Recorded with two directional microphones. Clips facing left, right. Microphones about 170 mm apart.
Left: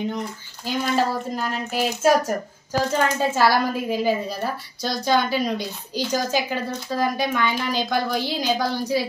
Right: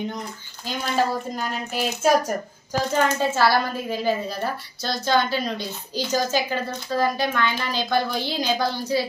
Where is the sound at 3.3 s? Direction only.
10° left (ahead or behind).